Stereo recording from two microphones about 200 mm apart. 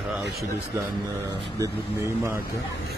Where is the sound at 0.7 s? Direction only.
15° right (ahead or behind).